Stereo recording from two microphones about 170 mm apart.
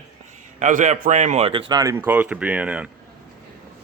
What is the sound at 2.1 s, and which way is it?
Speech, 10° right (ahead or behind).